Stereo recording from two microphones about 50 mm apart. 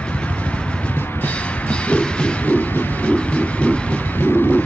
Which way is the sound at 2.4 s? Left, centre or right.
Left.